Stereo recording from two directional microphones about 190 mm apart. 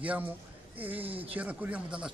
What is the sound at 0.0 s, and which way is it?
A man's voice, 5° right (ahead or behind).